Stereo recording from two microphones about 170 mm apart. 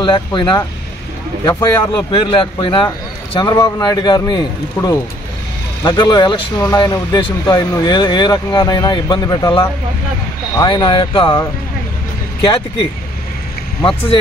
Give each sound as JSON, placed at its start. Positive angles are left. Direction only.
{"t": 0.0, "sound": "speech", "side_deg": 30}
{"t": 13.8, "sound": "speech", "side_deg": 30}